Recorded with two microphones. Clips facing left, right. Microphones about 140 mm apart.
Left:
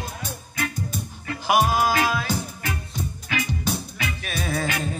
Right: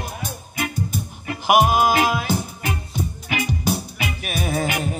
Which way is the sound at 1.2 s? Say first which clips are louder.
Right 4 dB; 20° right (ahead or behind).